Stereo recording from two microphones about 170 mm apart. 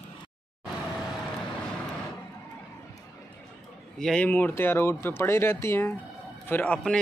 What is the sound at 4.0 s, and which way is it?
A man's voice, 5° left (ahead or behind).